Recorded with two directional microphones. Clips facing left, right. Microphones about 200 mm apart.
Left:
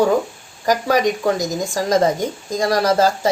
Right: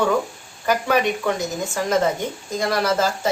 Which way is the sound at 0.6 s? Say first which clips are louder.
Left 3 dB; 40° left (ahead or behind).